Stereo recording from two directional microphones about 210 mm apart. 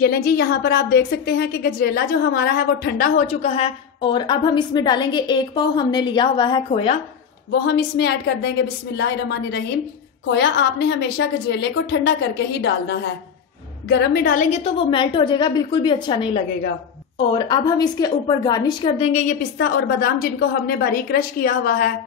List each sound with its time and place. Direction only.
0.0 s a woman's voice: 45° left (ahead or behind)
3.4 s a woman's voice: 25° left (ahead or behind)
7.6 s a woman's voice: 50° left (ahead or behind)
14.6 s a woman's voice: 25° left (ahead or behind)
17.3 s a woman's voice: 20° left (ahead or behind)
19.6 s a woman's voice: 45° left (ahead or behind)